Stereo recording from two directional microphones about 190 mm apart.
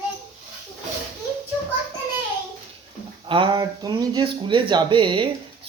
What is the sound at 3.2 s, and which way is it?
Speech, 25° right (ahead or behind).